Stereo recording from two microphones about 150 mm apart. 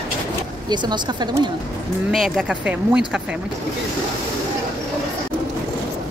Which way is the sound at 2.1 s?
Centre (ahead or behind).